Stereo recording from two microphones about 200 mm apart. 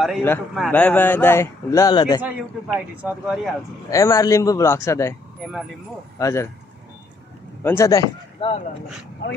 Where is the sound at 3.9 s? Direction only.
15° left (ahead or behind).